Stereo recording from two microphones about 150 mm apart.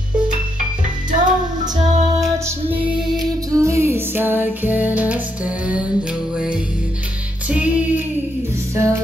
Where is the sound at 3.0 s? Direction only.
25° right (ahead or behind).